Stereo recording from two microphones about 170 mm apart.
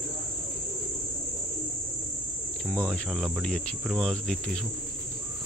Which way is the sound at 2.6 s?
5° left (ahead or behind).